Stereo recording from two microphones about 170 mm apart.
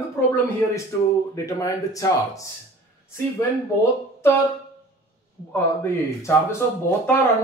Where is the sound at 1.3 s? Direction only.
20° left (ahead or behind).